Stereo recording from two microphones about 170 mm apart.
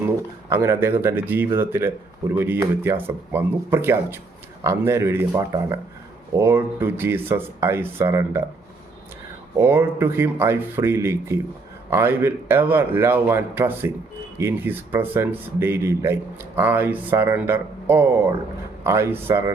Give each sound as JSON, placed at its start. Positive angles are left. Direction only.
{"t": 0.5, "sound": "speech", "side_deg": -15}
{"t": 9.6, "sound": "speech", "side_deg": -15}